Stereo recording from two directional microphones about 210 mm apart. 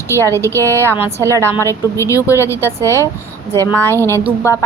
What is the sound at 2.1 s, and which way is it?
Speech, 15° left (ahead or behind).